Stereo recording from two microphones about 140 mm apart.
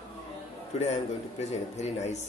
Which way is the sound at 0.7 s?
55° left (ahead or behind).